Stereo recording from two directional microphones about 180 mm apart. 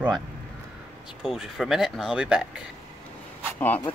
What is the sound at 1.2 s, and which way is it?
Speech, 5° right (ahead or behind).